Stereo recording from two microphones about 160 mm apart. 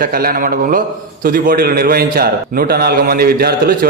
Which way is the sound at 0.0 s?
65° right (ahead or behind).